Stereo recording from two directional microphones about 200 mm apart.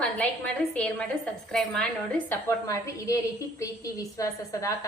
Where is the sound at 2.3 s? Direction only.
15° left (ahead or behind).